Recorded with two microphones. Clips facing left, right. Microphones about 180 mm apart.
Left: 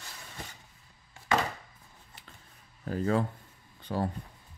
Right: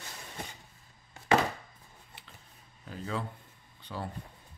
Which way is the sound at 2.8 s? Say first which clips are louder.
Left 9 dB; 50° left (ahead or behind).